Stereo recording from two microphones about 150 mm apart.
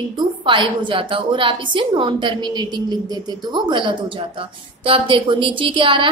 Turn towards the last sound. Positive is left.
turn(degrees=-35)  # may be behind; listen again after turning